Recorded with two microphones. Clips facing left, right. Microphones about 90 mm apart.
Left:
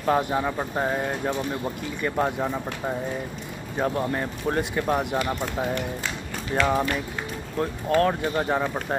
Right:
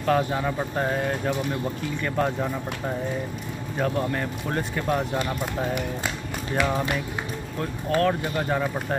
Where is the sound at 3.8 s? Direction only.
15° left (ahead or behind).